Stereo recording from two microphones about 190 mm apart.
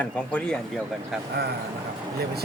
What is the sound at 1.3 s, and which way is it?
Speech, 60° right (ahead or behind).